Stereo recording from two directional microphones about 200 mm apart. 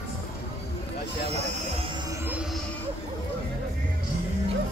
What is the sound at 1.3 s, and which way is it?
Speech, 30° right (ahead or behind).